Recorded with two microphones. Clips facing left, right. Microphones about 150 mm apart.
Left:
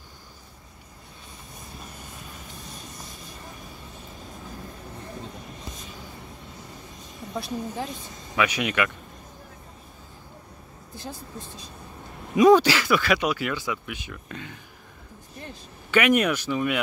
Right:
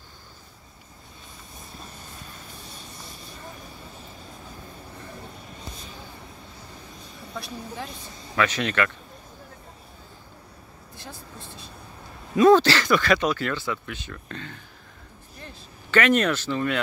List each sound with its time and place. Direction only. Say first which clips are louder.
2.6 s vehicle: left 2 dB; 30° right (ahead or behind)
7.3 s a woman's voice: left 5 dB; 30° left (ahead or behind)
8.4 s speech: even; 10° left (ahead or behind)
12.4 s speech: even; 10° left (ahead or behind)
15.9 s speech: even; 10° left (ahead or behind)